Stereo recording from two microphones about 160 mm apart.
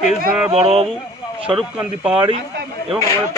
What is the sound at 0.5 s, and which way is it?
Speech, 40° right (ahead or behind).